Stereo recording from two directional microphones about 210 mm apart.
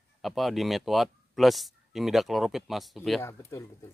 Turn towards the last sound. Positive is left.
turn(degrees=15)  # may be behind; listen again after turning